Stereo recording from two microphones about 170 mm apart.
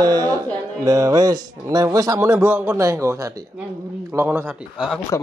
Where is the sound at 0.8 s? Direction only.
20° right (ahead or behind).